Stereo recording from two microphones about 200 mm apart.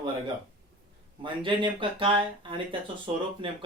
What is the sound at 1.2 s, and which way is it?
Speech, 25° right (ahead or behind).